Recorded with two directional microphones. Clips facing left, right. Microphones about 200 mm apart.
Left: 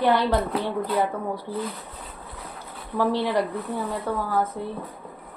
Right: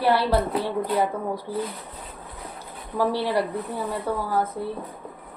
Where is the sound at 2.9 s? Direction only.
10° right (ahead or behind).